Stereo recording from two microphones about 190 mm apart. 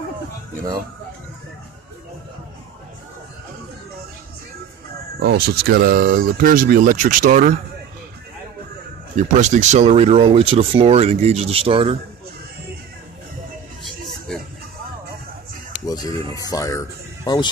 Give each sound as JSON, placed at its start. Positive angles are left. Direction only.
{"t": 5.2, "sound": "speech", "side_deg": -55}
{"t": 9.1, "sound": "speech", "side_deg": -40}
{"t": 13.8, "sound": "a sound", "side_deg": 0}
{"t": 15.9, "sound": "speech", "side_deg": 20}